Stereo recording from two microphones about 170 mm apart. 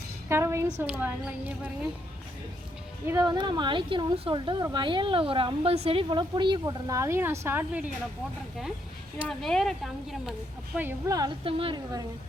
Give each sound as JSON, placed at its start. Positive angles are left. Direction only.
{"t": 0.3, "sound": "a woman's voice", "side_deg": -15}
{"t": 3.1, "sound": "a woman's voice", "side_deg": -25}
{"t": 9.1, "sound": "speech", "side_deg": 0}
{"t": 10.8, "sound": "speech", "side_deg": -15}
{"t": 11.4, "sound": "a woman's voice", "side_deg": -30}